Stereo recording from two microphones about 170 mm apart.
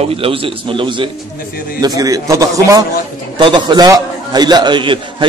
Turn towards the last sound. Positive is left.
turn(degrees=-30)  # may be behind; listen again after turning